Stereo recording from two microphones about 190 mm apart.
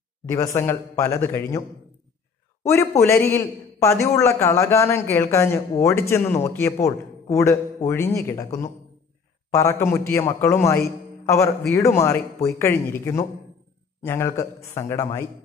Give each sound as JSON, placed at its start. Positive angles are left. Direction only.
{"t": 0.6, "sound": "a man's voice", "side_deg": 15}
{"t": 2.6, "sound": "a man's voice", "side_deg": 15}